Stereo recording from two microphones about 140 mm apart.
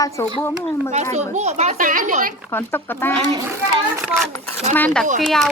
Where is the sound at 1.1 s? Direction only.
55° right (ahead or behind); by 2.3 s 70° right (ahead or behind).